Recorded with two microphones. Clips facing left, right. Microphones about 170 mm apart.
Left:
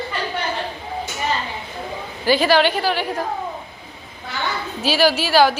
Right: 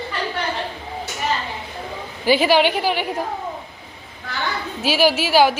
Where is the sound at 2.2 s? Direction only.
15° right (ahead or behind).